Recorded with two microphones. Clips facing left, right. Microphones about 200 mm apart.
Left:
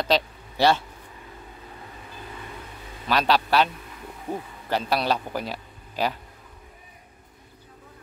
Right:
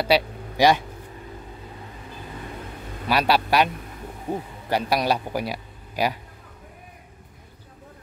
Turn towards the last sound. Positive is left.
turn(degrees=-10)  # may be behind; listen again after turning